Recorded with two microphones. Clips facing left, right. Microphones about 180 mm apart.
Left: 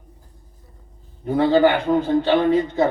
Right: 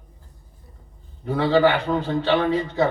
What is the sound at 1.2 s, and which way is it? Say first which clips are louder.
A man's voice: left 2 dB; 20° left (ahead or behind).